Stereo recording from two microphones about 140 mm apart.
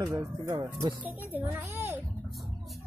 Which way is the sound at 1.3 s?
15° right (ahead or behind).